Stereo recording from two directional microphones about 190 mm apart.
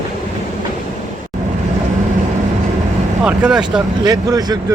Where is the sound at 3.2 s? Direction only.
5° right (ahead or behind).